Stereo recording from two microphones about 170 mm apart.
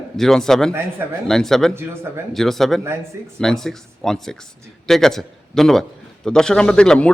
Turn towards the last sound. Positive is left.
turn(degrees=5)  # may be behind; listen again after turning